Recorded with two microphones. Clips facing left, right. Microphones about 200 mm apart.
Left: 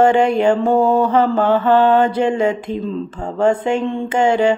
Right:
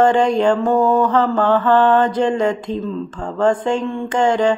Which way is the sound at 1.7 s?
10° left (ahead or behind).